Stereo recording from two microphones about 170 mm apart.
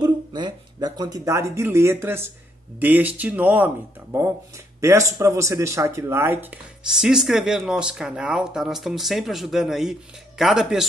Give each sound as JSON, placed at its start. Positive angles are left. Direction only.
{"t": 0.0, "sound": "speech", "side_deg": -25}
{"t": 6.9, "sound": "speech", "side_deg": -5}